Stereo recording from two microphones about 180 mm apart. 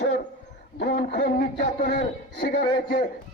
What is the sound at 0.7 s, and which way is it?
A man's voice, 65° left (ahead or behind).